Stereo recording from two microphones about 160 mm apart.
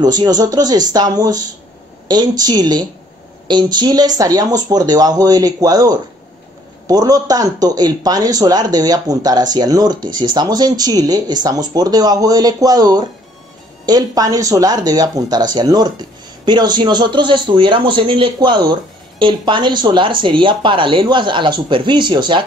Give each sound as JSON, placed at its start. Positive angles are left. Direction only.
{"t": 0.0, "sound": "speech", "side_deg": -25}